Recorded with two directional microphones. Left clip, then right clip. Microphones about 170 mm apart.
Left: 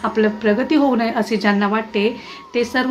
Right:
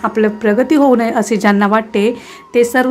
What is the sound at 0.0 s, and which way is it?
A woman's voice, 35° right (ahead or behind).